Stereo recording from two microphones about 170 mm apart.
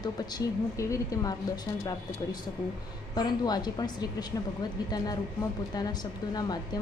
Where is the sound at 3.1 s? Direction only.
25° left (ahead or behind).